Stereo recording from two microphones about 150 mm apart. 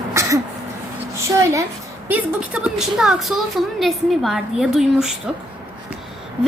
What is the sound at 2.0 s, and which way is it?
A woman's voice, 10° right (ahead or behind).